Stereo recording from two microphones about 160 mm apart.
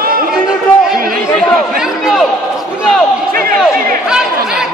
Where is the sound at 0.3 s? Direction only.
5° right (ahead or behind).